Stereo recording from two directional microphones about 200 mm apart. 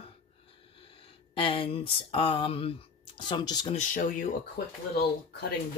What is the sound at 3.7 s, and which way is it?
Speech, 40° left (ahead or behind).